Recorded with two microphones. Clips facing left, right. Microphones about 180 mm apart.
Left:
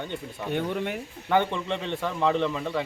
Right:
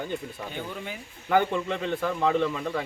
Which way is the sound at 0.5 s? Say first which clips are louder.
Left 12 dB; 65° left (ahead or behind).